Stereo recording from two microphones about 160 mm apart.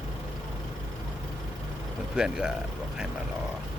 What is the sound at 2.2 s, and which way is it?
Speech, 5° right (ahead or behind).